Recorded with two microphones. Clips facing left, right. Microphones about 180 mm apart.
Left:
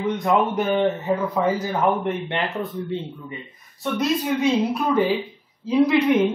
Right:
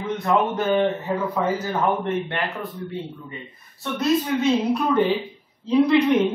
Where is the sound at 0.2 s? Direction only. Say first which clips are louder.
Right 1 dB; 15° left (ahead or behind).